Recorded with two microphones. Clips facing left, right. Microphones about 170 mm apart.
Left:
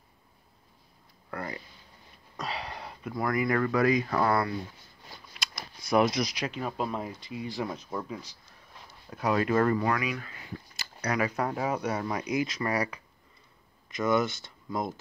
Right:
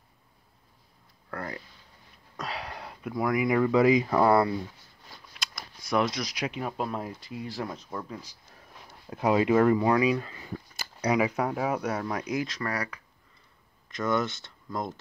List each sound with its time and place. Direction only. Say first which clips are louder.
1.3 s a sound: even; 5° left (ahead or behind)
2.3 s speech: even; centre (ahead or behind); by 4.6 s 25° right (ahead or behind)
5.6 s a sound: left 2 dB; 5° left (ahead or behind)
6.4 s speech: right 1 dB; 10° right (ahead or behind)
9.1 s speech: right 3 dB; 20° right (ahead or behind)
9.8 s speech: right 6 dB; 25° right (ahead or behind)
11.1 s speech: right 4 dB; 15° right (ahead or behind)
11.3 s speech: right 1 dB; 5° right (ahead or behind); by 13.0 s 20° left (ahead or behind)
13.8 s speech: left 2 dB; 5° left (ahead or behind)